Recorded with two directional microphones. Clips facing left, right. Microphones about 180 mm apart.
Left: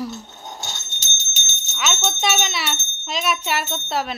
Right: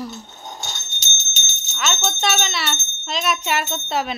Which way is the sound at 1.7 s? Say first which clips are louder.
Even; 5° left (ahead or behind).